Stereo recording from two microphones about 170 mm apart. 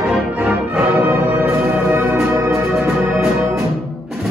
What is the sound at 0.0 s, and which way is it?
Music, 10° right (ahead or behind).